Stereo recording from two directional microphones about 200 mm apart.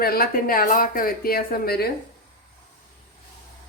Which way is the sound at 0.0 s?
50° left (ahead or behind).